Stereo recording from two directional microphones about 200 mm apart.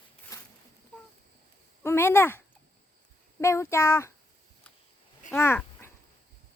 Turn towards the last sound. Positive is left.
turn(degrees=10)  # may be behind; listen again after turning